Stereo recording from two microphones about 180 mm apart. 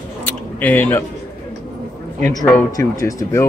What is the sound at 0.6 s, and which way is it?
Speech, 10° left (ahead or behind).